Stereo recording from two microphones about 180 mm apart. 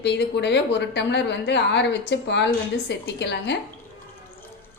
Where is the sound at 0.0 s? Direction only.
70° left (ahead or behind).